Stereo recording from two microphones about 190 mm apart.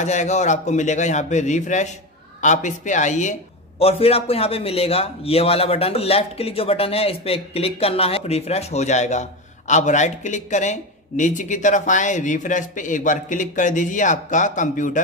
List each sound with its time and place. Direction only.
0.0 s a man's voice: 40° left (ahead or behind)